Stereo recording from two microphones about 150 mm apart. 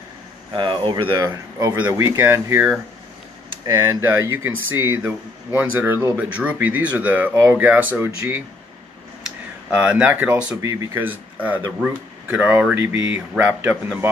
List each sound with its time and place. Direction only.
0.5 s speech: 30° right (ahead or behind)
1.8 s speech: 10° right (ahead or behind)
3.6 s speech: 20° right (ahead or behind)
9.8 s speech: 10° right (ahead or behind)
10.6 s speech: 20° right (ahead or behind)